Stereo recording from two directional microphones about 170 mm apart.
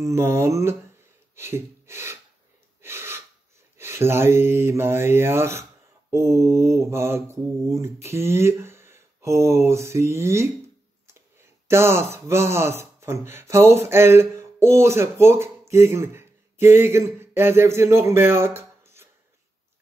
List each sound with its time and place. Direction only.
0.0 s mantra: 15° right (ahead or behind)
1.3 s speech: 15° right (ahead or behind)
2.8 s gasp: 15° right (ahead or behind)
3.7 s mantra: 15° right (ahead or behind)
11.1 s speech: 15° right (ahead or behind)